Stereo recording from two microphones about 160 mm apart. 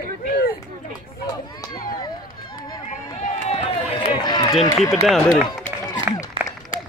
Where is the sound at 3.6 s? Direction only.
25° left (ahead or behind).